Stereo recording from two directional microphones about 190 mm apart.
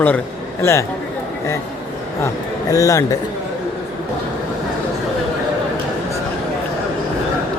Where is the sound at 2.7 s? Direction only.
15° left (ahead or behind).